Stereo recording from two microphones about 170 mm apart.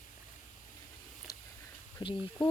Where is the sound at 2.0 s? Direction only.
30° left (ahead or behind).